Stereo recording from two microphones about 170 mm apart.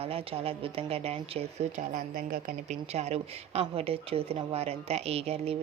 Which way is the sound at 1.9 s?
60° right (ahead or behind).